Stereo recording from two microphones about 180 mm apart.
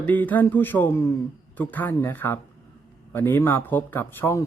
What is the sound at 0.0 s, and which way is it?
Speech, 10° left (ahead or behind).